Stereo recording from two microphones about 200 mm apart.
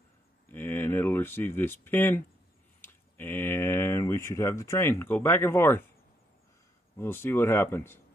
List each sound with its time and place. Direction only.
0.5 s speech: 10° left (ahead or behind)
7.0 s speech: 10° left (ahead or behind)